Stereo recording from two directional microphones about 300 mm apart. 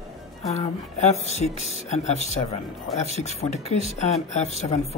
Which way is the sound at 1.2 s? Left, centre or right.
Left.